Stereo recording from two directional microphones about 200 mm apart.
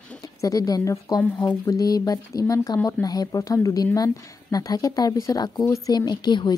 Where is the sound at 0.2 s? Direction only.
15° left (ahead or behind).